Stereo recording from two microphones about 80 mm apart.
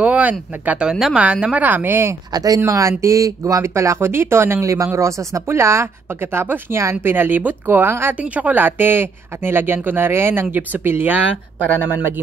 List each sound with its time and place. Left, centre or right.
0.0 s a woman's voice: centre
2.3 s a woman's voice: right
8.2 s a woman's voice: centre